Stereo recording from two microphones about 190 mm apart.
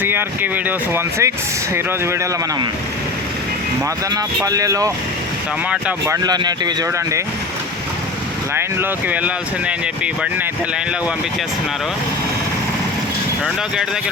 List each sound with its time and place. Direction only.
0.0 s speech: 10° right (ahead or behind)
4.1 s speech: 20° right (ahead or behind)
6.1 s speech: 20° right (ahead or behind)
8.5 s speech: 10° right (ahead or behind)